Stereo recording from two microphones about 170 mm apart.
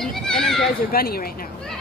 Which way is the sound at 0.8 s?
60° left (ahead or behind).